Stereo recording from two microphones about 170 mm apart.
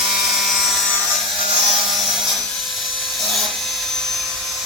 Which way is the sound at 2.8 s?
Centre (ahead or behind).